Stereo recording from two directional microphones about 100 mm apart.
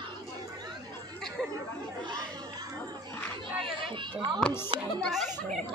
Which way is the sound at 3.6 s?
60° right (ahead or behind).